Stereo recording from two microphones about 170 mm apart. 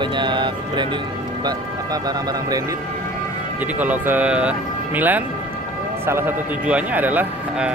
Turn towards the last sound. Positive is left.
turn(degrees=-10)  # may be behind; listen again after turning